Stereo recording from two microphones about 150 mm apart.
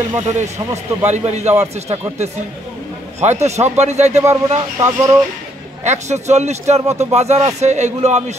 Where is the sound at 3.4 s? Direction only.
50° right (ahead or behind).